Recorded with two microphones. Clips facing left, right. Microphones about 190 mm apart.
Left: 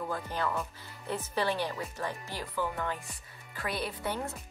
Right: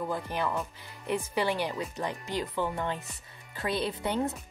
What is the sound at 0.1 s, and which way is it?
Speech, 15° right (ahead or behind).